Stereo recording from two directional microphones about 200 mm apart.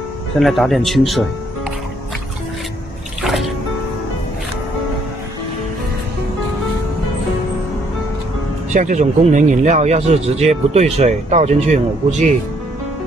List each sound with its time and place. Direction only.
0.4 s speech: centre (ahead or behind)
3.2 s music: centre (ahead or behind)
8.7 s speech: 40° right (ahead or behind)